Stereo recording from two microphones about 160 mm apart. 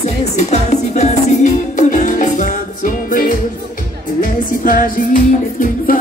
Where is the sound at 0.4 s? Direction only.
45° left (ahead or behind).